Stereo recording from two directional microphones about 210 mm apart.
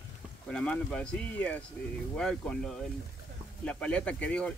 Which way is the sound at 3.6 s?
5° left (ahead or behind).